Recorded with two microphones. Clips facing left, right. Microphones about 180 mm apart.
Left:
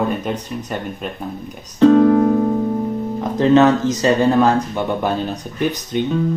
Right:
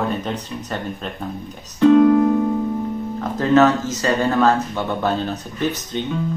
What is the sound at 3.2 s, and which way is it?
Speech, 20° left (ahead or behind).